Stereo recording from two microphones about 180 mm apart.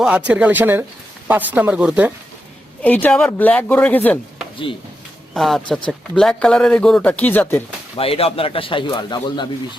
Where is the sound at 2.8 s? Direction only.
10° left (ahead or behind).